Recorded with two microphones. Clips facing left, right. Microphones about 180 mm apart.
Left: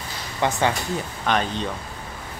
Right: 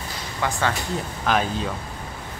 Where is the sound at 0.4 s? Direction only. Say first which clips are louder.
Left 3 dB; 20° left (ahead or behind).